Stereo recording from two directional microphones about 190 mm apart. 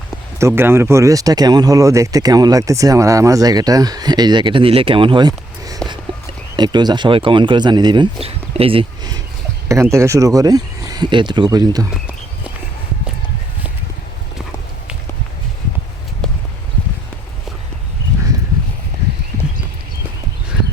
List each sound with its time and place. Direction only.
0.3 s speech: 15° right (ahead or behind)